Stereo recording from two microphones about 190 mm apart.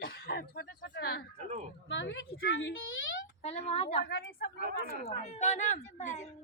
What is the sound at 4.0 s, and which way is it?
Speech, 60° left (ahead or behind).